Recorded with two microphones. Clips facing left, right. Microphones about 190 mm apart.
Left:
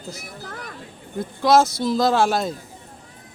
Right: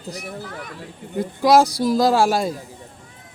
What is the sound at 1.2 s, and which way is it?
Speech, 10° right (ahead or behind).